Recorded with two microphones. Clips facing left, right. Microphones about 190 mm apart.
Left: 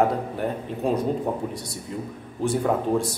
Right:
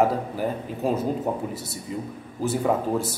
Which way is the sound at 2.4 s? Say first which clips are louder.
Even; centre (ahead or behind).